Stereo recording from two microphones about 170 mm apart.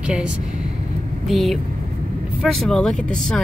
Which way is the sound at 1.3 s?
Centre (ahead or behind).